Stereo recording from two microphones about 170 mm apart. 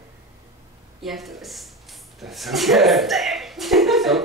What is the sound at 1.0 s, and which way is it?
A woman's voice, centre (ahead or behind).